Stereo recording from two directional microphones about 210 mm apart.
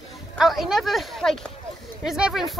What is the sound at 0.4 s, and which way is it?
Speech, centre (ahead or behind).